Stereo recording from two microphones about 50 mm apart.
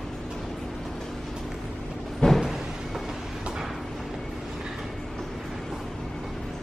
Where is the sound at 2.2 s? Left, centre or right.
Centre.